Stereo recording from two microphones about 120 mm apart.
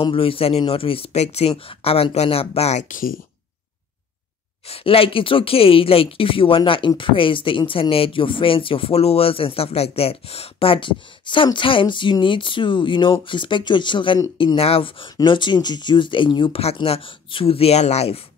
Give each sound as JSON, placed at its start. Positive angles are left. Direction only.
{"t": 0.0, "sound": "speech", "side_deg": 50}
{"t": 1.5, "sound": "speech", "side_deg": 50}
{"t": 4.6, "sound": "speech", "side_deg": 55}
{"t": 16.7, "sound": "speech", "side_deg": 50}